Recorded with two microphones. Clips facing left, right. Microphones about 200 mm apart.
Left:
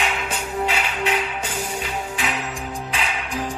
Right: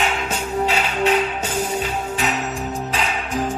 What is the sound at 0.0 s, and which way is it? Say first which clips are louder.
Music: right 3 dB; 40° right (ahead or behind).